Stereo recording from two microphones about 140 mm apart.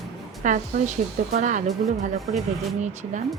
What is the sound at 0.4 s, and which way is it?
Speech, 65° right (ahead or behind).